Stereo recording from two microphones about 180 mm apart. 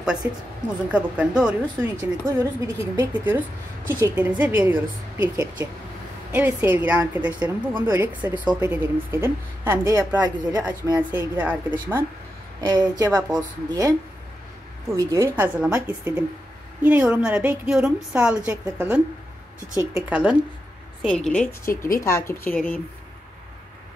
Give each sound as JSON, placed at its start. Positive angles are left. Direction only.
{"t": 0.9, "sound": "a woman's voice", "side_deg": -5}
{"t": 2.0, "sound": "a woman's voice", "side_deg": -20}
{"t": 15.0, "sound": "a woman's voice", "side_deg": -15}
{"t": 21.0, "sound": "a woman's voice", "side_deg": 5}